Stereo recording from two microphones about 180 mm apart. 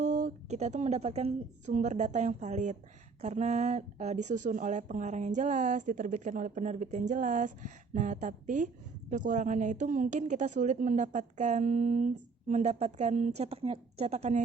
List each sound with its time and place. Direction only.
0.0 s a woman's voice: 40° right (ahead or behind)